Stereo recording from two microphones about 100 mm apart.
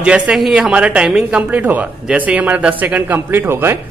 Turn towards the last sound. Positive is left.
turn(degrees=-25)  # may be behind; listen again after turning